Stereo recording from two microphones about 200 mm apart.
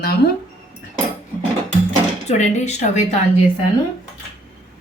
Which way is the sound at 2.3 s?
35° left (ahead or behind).